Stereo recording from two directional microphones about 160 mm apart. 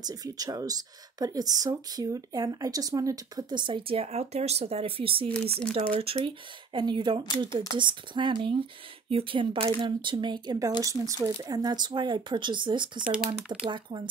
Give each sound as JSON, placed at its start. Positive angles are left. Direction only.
{"t": 0.0, "sound": "speech", "side_deg": -25}
{"t": 13.0, "sound": "speech", "side_deg": -5}
{"t": 13.7, "sound": "speech", "side_deg": -30}